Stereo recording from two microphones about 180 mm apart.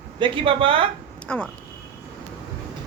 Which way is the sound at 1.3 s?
5° left (ahead or behind).